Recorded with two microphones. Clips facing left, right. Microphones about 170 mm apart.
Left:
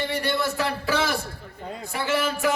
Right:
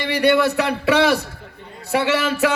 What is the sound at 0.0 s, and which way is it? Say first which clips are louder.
A man's voice: right 9 dB; 70° right (ahead or behind).